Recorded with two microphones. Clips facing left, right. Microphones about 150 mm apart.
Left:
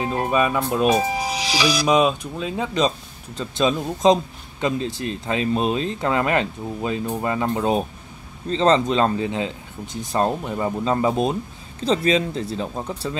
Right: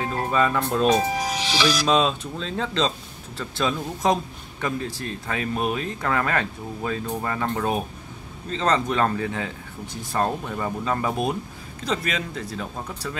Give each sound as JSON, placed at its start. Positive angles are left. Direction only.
{"t": 0.0, "sound": "a man's voice", "side_deg": 20}